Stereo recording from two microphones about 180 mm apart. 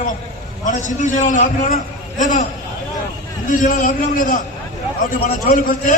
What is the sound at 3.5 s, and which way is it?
A man's voice, 45° left (ahead or behind).